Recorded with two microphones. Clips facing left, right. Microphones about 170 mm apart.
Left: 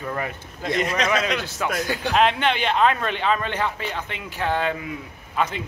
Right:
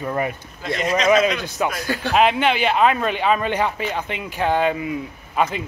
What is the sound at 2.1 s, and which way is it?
A man's voice, 10° right (ahead or behind).